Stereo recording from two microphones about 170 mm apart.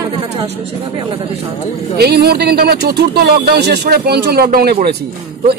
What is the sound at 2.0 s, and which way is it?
Speech, 70° right (ahead or behind).